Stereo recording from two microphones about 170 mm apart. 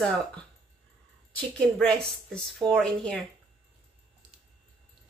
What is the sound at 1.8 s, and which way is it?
Speech, 5° left (ahead or behind).